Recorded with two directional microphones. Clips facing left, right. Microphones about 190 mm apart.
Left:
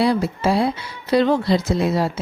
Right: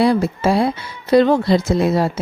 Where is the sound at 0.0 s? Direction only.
50° right (ahead or behind).